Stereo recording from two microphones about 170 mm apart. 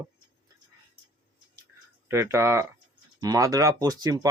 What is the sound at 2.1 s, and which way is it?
Speech, 15° right (ahead or behind).